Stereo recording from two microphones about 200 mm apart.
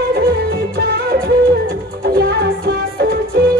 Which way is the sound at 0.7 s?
50° right (ahead or behind).